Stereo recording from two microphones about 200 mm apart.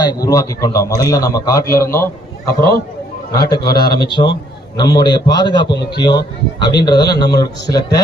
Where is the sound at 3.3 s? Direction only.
20° left (ahead or behind).